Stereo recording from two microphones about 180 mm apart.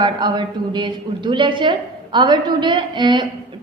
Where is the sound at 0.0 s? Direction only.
25° right (ahead or behind).